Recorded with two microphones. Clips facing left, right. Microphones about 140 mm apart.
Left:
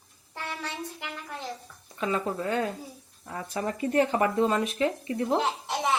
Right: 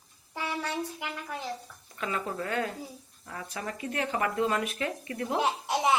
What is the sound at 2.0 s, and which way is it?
Speech, 25° left (ahead or behind).